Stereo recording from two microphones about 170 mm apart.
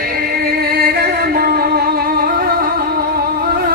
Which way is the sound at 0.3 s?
65° right (ahead or behind).